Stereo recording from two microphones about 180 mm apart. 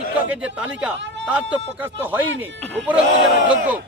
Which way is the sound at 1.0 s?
80° right.